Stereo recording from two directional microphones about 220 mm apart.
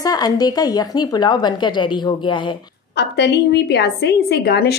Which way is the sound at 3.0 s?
50° left (ahead or behind).